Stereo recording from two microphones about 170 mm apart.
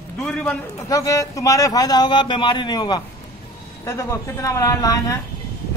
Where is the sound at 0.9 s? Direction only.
20° left (ahead or behind).